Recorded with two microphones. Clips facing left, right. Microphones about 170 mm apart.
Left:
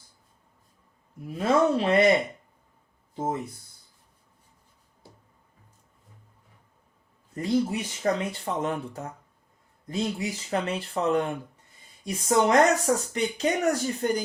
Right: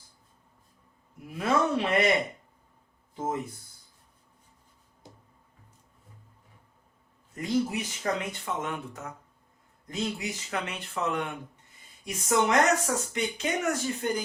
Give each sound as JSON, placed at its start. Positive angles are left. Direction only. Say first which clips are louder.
{"t": 1.4, "sound": "speech", "louder": "left 4 dB", "side_deg": 30}
{"t": 7.3, "sound": "speech", "louder": "left 3 dB", "side_deg": 30}